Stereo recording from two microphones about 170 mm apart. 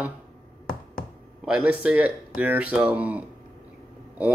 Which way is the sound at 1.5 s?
5° right (ahead or behind).